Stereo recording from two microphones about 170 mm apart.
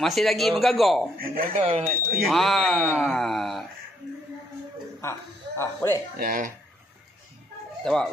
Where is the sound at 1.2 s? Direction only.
55° right (ahead or behind).